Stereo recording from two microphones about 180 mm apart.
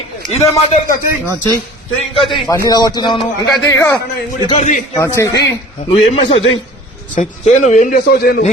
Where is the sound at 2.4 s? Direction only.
15° left (ahead or behind).